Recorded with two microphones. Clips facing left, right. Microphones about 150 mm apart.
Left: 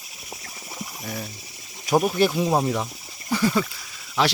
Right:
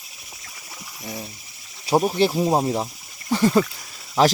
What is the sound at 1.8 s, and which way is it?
Speech, 30° right (ahead or behind).